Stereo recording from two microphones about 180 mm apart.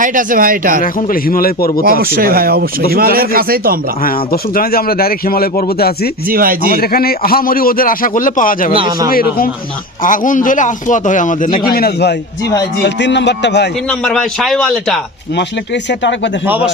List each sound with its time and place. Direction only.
0.0 s speech: 45° right (ahead or behind)
0.8 s a man's voice: 50° left (ahead or behind)
1.8 s speech: 55° right (ahead or behind)
4.0 s speech: 55° left (ahead or behind)
6.2 s speech: 55° right (ahead or behind)
6.7 s a man's voice: 55° left (ahead or behind)
8.7 s a man's voice: 30° right (ahead or behind)
9.0 s a man's voice: 55° left (ahead or behind)
11.6 s speech: 60° left (ahead or behind)
12.8 s speech: 75° left (ahead or behind)
14.0 s a man's voice: 5° left (ahead or behind)
15.4 s speech: 75° left (ahead or behind)